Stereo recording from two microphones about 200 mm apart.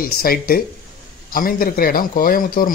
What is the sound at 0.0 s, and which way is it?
Speech, 50° left (ahead or behind).